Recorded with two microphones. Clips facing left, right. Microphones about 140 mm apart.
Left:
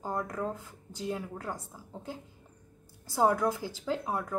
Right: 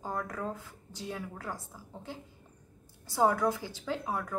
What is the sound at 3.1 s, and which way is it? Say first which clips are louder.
Speech: left 1 dB; 15° left (ahead or behind).